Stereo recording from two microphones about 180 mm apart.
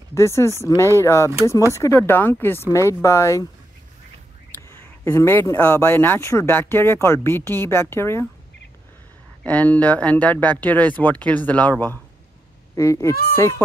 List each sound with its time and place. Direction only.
0.1 s speech: 15° left (ahead or behind)
4.6 s speech: 15° left (ahead or behind)
9.4 s speech: 5° left (ahead or behind)